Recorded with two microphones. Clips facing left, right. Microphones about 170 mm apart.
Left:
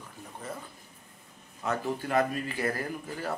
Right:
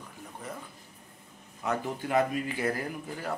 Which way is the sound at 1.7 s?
15° right (ahead or behind).